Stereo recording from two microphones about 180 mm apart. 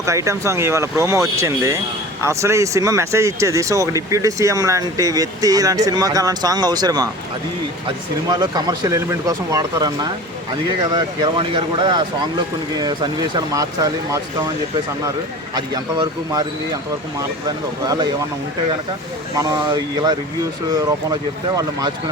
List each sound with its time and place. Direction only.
0.0 s speech: 15° right (ahead or behind)
8.3 s speech: 20° right (ahead or behind)
15.5 s speech: 20° right (ahead or behind)
17.8 s speech: 20° right (ahead or behind)
19.4 s speech: 25° right (ahead or behind)